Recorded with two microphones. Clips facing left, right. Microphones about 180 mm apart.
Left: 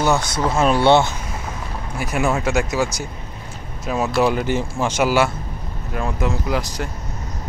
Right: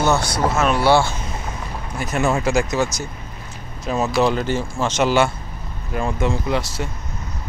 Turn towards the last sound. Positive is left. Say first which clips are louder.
# even
turn(degrees=0)  # may be behind; listen again after turning